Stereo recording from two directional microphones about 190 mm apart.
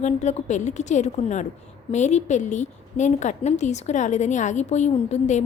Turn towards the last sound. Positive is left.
turn(degrees=35)  # may be behind; listen again after turning